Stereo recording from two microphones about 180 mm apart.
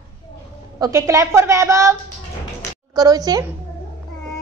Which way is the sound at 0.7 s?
20° right (ahead or behind).